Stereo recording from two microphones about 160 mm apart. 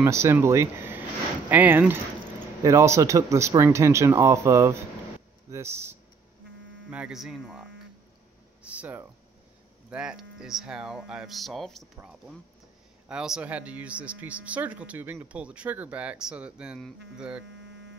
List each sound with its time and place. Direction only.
0.0 s speech: 15° right (ahead or behind)
6.9 s speech: 5° right (ahead or behind)